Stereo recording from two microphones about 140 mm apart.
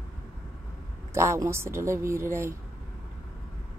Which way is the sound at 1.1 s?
20° right (ahead or behind).